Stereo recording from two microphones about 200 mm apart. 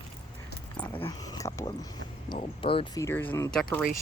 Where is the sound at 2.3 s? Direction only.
25° left (ahead or behind); by 3.8 s 5° left (ahead or behind).